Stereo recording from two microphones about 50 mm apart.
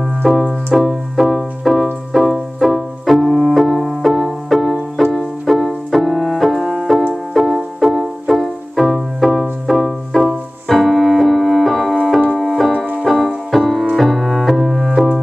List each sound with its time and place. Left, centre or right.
0.0 s music: centre
12.4 s keyboard: centre
12.7 s music: right
13.0 s music: centre